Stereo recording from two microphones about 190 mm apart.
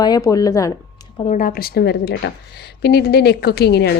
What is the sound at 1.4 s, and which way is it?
A woman's voice, 50° left (ahead or behind).